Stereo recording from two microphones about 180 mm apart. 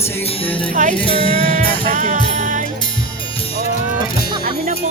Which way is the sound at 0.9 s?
30° left (ahead or behind).